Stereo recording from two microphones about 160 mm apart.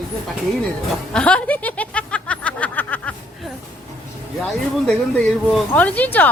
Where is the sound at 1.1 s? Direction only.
5° left (ahead or behind).